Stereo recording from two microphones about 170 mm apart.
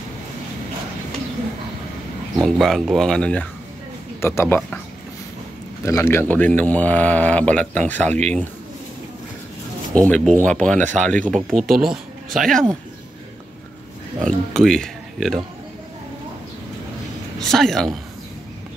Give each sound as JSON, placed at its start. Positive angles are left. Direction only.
{"t": 2.4, "sound": "a man's voice", "side_deg": 0}
{"t": 5.9, "sound": "a man's voice", "side_deg": 15}
{"t": 9.9, "sound": "a man's voice", "side_deg": 5}
{"t": 14.2, "sound": "speech", "side_deg": 5}
{"t": 17.4, "sound": "speech", "side_deg": 0}